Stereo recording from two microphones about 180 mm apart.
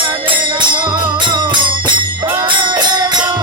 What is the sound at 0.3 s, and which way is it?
Music, 25° right (ahead or behind).